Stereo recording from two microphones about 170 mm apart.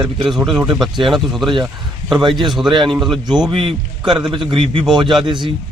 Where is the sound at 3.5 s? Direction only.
30° right (ahead or behind).